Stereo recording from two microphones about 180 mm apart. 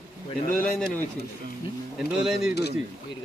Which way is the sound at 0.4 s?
50° left (ahead or behind).